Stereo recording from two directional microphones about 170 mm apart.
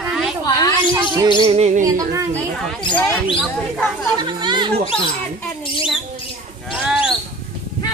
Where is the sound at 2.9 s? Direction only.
10° left (ahead or behind).